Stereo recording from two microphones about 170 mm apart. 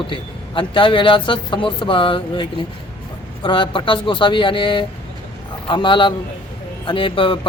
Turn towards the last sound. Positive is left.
turn(degrees=30)  # may be behind; listen again after turning